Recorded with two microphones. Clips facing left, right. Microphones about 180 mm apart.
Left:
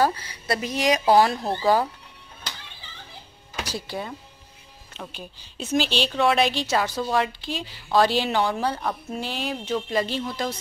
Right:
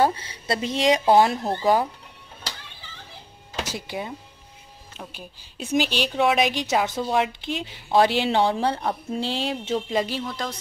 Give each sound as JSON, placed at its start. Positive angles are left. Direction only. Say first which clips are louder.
{"t": 0.0, "sound": "a woman's voice", "louder": "right 1 dB", "side_deg": -25}
{"t": 3.5, "sound": "a woman's voice", "louder": "right 1 dB", "side_deg": -20}
{"t": 10.2, "sound": "speech", "louder": "left 2 dB", "side_deg": 10}